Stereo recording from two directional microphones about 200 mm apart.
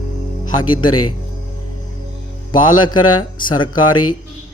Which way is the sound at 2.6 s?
90° left.